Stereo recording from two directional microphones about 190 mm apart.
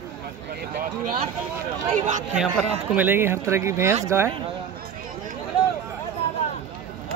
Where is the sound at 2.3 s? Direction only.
5° right (ahead or behind).